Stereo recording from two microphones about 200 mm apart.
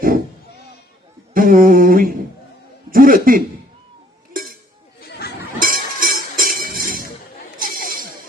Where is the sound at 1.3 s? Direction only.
45° right (ahead or behind).